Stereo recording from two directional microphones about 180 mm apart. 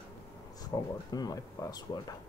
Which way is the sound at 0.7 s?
20° left (ahead or behind).